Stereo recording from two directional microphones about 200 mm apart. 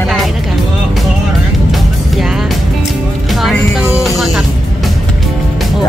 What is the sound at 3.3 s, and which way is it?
Music, centre (ahead or behind).